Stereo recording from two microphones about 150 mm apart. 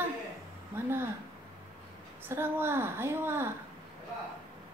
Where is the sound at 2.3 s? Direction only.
15° right (ahead or behind).